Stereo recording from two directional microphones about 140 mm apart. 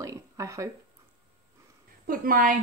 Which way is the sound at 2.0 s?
85° right.